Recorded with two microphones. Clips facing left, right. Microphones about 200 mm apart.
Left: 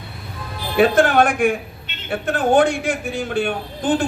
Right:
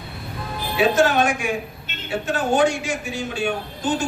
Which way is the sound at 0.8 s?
55° left (ahead or behind).